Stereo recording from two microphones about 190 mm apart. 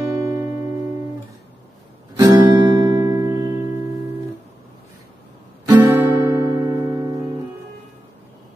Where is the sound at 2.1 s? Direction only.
20° right (ahead or behind).